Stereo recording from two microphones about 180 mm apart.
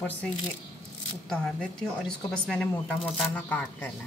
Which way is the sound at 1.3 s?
5° left (ahead or behind).